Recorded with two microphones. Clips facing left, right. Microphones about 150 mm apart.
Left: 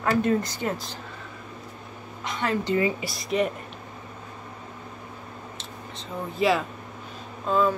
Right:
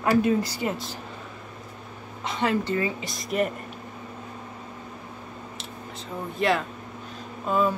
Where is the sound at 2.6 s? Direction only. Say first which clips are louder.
Left 3 dB; 20° left (ahead or behind).